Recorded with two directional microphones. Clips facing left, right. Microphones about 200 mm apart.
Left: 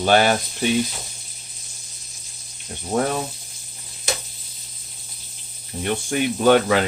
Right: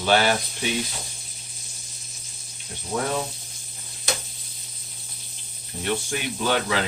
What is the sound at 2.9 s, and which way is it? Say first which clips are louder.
Speech: left 6 dB; 45° left (ahead or behind).